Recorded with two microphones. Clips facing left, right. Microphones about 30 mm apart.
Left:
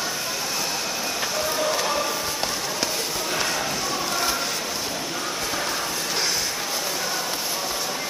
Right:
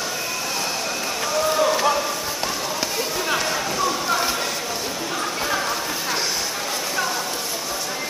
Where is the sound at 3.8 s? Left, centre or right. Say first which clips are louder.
Right 4 dB; centre.